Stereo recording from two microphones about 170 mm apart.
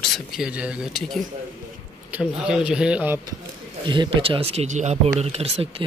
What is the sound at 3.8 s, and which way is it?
Speech, 25° right (ahead or behind).